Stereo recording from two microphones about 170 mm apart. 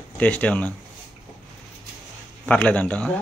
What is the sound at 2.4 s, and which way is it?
Speech, 5° left (ahead or behind).